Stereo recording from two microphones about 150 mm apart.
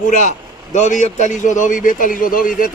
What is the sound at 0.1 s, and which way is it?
A man's voice, 55° left (ahead or behind).